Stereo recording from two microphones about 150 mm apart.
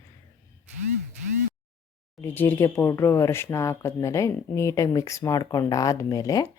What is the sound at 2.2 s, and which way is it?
Speech, 15° left (ahead or behind).